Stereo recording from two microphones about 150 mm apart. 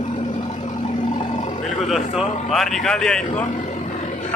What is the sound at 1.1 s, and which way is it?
Roar, 40° left (ahead or behind).